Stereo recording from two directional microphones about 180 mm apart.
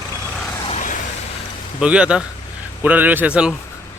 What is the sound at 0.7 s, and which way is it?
Vehicle, 45° left (ahead or behind).